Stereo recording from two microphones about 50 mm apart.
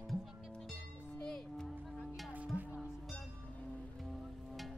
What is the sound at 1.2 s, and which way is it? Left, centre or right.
Music, centre.